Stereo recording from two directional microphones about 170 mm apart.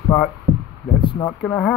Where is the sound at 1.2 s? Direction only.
10° left (ahead or behind).